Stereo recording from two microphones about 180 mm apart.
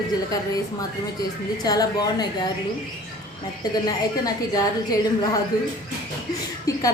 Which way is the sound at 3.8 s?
20° left (ahead or behind).